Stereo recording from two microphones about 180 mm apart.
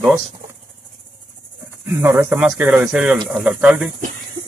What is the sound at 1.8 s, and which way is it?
Speech, 15° right (ahead or behind).